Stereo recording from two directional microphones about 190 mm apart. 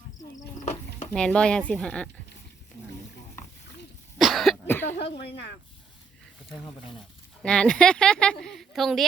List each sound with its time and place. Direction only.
0.2 s cricket: 35° left (ahead or behind)
1.1 s speech: 5° left (ahead or behind)
4.2 s cough: centre (ahead or behind)
4.6 s cough: 10° left (ahead or behind)
7.4 s speech: 5° left (ahead or behind)